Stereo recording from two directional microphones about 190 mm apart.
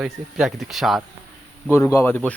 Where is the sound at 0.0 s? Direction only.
Centre (ahead or behind).